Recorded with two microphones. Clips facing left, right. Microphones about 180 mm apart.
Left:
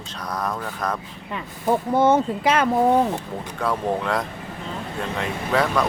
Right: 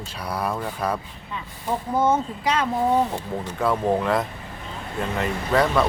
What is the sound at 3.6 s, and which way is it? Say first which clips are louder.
Speech: right 2 dB; 5° right (ahead or behind).